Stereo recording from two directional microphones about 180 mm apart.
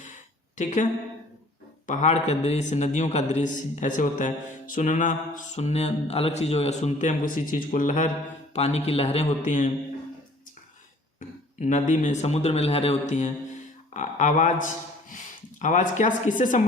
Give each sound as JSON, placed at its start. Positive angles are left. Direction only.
{"t": 0.5, "sound": "a woman's voice", "side_deg": 45}
{"t": 1.9, "sound": "a man's voice", "side_deg": 40}
{"t": 4.7, "sound": "mantra", "side_deg": 45}
{"t": 8.5, "sound": "a man's voice", "side_deg": 35}
{"t": 11.6, "sound": "a man's voice", "side_deg": 45}
{"t": 13.9, "sound": "mantra", "side_deg": 40}
{"t": 15.1, "sound": "speech", "side_deg": 45}